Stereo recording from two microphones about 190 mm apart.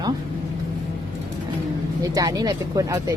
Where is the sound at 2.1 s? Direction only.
20° right (ahead or behind).